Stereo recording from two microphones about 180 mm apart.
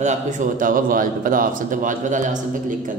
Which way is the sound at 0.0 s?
45° right (ahead or behind).